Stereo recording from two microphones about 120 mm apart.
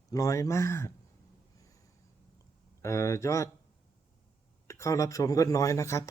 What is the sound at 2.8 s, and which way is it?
Speech, 25° left (ahead or behind).